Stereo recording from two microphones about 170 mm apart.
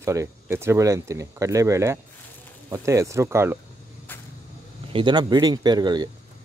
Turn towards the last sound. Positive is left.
turn(degrees=-25)  # may be behind; listen again after turning